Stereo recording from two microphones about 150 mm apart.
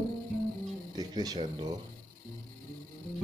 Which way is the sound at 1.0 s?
25° right (ahead or behind).